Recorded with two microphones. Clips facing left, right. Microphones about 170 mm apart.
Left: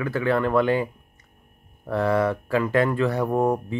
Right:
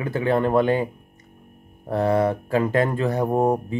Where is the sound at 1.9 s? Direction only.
25° right (ahead or behind).